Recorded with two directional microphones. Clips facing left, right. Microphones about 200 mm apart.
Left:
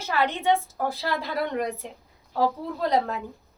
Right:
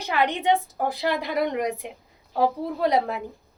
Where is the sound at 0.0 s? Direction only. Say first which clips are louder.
Right 1 dB; 15° right (ahead or behind).